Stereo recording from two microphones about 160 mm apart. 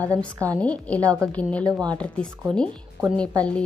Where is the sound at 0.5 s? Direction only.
10° left (ahead or behind).